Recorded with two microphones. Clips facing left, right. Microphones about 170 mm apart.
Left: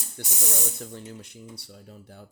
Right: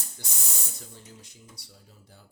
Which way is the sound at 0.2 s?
60° left (ahead or behind).